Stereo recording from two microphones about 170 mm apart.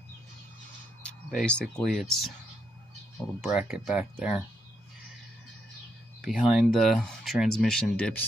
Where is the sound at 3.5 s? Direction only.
5° right (ahead or behind).